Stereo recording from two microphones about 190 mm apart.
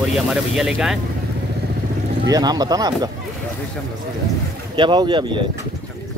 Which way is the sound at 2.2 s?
20° right (ahead or behind).